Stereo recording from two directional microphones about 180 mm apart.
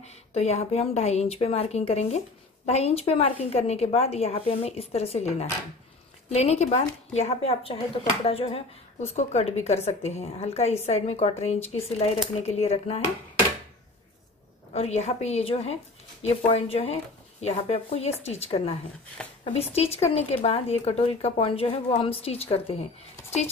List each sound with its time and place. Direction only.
0.0 s speech: 35° left (ahead or behind)
14.7 s speech: 35° left (ahead or behind)